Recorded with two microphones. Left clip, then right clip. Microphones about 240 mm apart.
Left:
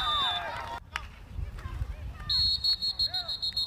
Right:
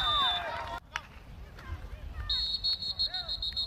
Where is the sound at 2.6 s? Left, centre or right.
Centre.